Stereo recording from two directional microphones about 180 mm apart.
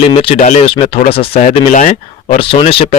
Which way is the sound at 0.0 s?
30° left (ahead or behind).